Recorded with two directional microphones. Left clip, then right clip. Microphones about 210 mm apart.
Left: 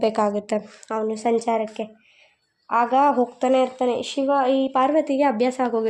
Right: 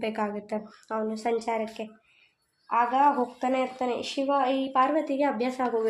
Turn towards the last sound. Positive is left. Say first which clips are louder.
# left 7 dB
turn(degrees=45)  # may be behind; listen again after turning